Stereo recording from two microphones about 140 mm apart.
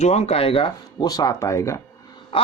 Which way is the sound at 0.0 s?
50° left (ahead or behind).